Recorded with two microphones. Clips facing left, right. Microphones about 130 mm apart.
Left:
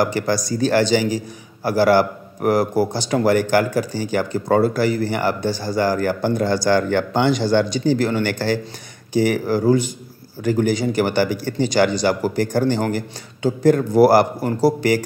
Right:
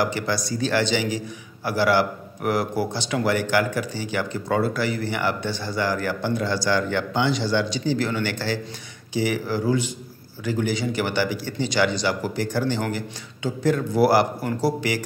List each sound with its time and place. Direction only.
0.0 s a man's voice: 45° left (ahead or behind)